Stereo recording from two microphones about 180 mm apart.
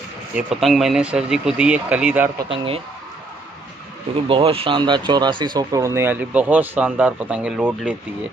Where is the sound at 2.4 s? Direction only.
25° right (ahead or behind).